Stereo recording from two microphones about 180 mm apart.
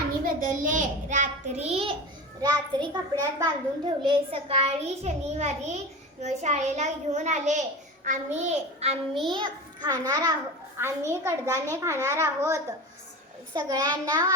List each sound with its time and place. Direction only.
0.3 s a child's voice: 45° right (ahead or behind)
9.1 s a child's voice: centre (ahead or behind)
9.4 s a child's voice: 20° right (ahead or behind)